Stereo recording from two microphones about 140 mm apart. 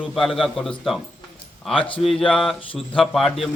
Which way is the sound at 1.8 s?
40° left (ahead or behind).